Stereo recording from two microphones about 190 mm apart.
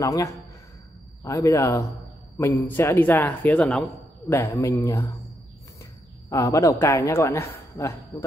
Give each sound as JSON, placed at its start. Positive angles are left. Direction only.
{"t": 0.0, "sound": "a woman's voice", "side_deg": 15}
{"t": 6.3, "sound": "a woman's voice", "side_deg": 15}